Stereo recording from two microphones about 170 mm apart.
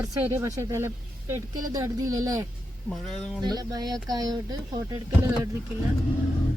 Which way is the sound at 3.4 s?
25° right (ahead or behind).